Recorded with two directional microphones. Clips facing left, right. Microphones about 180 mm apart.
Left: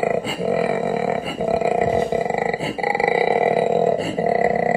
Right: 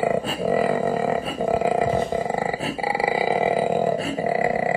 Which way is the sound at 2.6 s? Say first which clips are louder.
Left 3 dB; 20° left (ahead or behind).